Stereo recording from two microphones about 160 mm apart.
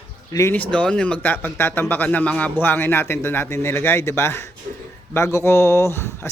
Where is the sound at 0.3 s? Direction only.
15° left (ahead or behind).